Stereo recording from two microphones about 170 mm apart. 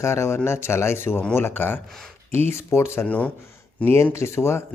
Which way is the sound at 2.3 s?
40° right (ahead or behind).